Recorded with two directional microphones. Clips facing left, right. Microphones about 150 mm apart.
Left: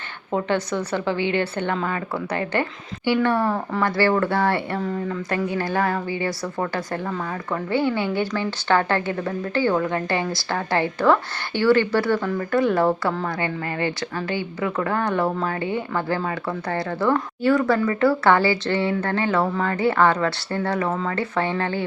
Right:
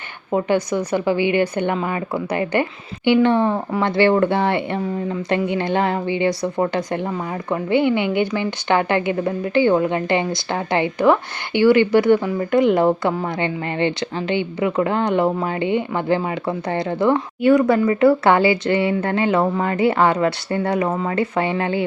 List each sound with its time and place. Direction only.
0.3 s a woman's voice: 10° right (ahead or behind)